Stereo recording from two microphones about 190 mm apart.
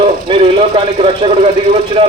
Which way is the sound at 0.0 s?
30° right (ahead or behind).